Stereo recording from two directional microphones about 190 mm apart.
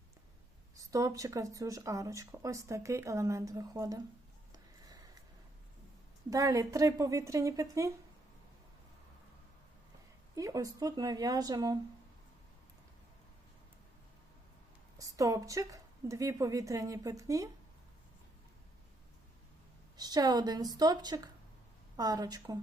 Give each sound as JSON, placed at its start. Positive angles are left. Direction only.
{"t": 0.8, "sound": "speech", "side_deg": -15}
{"t": 6.3, "sound": "speech", "side_deg": -20}
{"t": 10.3, "sound": "speech", "side_deg": -15}
{"t": 14.9, "sound": "speech", "side_deg": -15}
{"t": 20.0, "sound": "speech", "side_deg": -20}